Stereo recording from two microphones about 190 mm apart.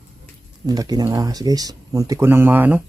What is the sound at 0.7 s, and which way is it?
Speech, 20° right (ahead or behind).